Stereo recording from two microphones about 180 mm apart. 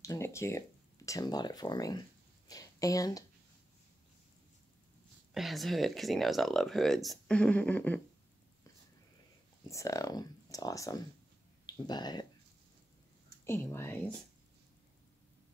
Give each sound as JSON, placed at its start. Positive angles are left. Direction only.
{"t": 0.0, "sound": "speech", "side_deg": 15}
{"t": 5.3, "sound": "speech", "side_deg": 0}
{"t": 9.7, "sound": "speech", "side_deg": 15}
{"t": 13.5, "sound": "speech", "side_deg": 15}